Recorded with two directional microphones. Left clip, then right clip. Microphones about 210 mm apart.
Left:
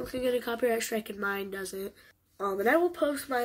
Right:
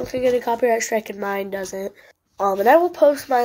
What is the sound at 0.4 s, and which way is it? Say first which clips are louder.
Speech: right 10 dB; 10° left (ahead or behind).